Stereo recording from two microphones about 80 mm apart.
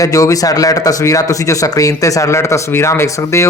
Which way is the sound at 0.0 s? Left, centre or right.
Left.